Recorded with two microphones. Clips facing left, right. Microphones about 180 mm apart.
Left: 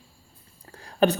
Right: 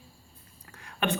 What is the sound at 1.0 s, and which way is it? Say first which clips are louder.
Speech: left 8 dB; 35° left (ahead or behind).